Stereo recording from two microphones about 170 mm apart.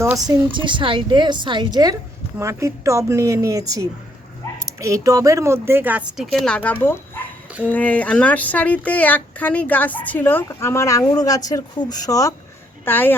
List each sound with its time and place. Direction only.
0.0 s a woman's voice: 20° right (ahead or behind)
4.6 s a sound: 20° right (ahead or behind)
5.0 s speech: 20° right (ahead or behind); by 13.1 s 10° left (ahead or behind)